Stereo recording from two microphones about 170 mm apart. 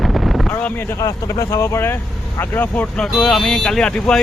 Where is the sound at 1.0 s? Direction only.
20° left (ahead or behind).